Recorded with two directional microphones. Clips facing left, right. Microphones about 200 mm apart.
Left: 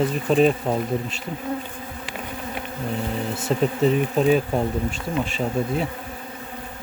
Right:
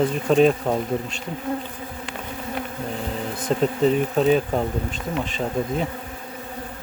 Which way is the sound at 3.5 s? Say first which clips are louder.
Right 1 dB; 5° left (ahead or behind).